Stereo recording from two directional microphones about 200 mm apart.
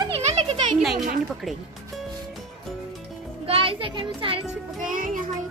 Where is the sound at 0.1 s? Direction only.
30° right (ahead or behind).